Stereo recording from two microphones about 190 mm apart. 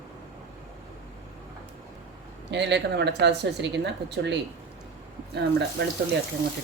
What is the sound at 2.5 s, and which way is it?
Speech, 65° right (ahead or behind).